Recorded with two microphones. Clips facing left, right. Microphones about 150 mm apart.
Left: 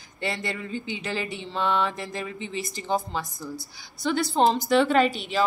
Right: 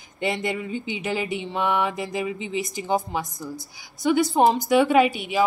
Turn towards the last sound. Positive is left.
turn(degrees=-10)  # may be behind; listen again after turning